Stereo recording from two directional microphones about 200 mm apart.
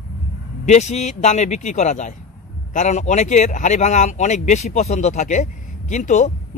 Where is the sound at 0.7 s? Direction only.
35° left (ahead or behind).